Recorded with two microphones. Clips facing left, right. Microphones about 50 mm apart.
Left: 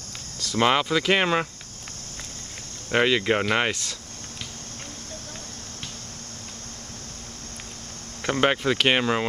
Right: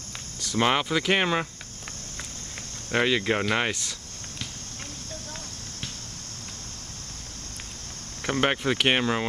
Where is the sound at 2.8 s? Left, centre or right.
Centre.